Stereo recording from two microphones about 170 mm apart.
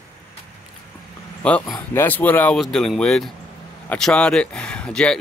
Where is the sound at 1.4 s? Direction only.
5° left (ahead or behind).